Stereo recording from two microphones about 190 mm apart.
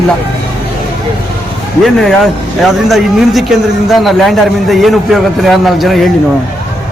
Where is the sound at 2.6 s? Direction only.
Centre (ahead or behind).